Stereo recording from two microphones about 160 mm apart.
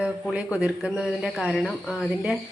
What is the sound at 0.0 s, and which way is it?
A woman's voice, 5° right (ahead or behind).